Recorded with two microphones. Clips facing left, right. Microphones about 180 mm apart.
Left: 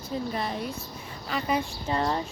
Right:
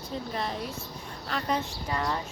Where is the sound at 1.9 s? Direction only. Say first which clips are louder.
Left 4 dB; 30° left (ahead or behind).